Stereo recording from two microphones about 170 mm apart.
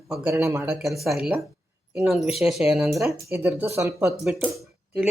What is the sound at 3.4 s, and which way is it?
Speech, 15° right (ahead or behind).